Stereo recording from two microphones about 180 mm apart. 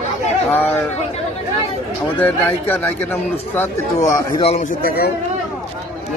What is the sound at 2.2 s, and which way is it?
A man's voice, 10° left (ahead or behind).